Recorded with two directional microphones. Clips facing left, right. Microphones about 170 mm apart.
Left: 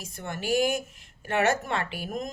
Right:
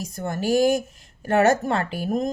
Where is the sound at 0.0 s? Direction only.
40° right (ahead or behind).